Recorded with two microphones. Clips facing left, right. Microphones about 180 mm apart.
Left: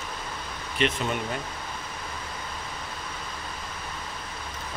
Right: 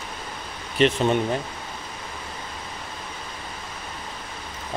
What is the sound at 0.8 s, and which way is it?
Speech, 35° right (ahead or behind).